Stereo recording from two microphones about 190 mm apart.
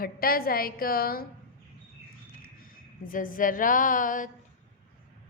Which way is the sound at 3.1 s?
45° left (ahead or behind).